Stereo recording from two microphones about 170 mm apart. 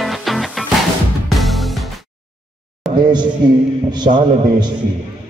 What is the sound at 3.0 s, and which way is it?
Music, 25° right (ahead or behind).